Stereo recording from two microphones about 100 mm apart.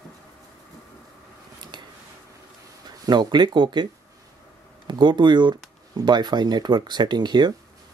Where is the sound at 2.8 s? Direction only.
45° right (ahead or behind).